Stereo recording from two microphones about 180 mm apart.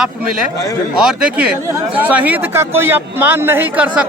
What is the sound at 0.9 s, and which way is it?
Speech, 5° right (ahead or behind).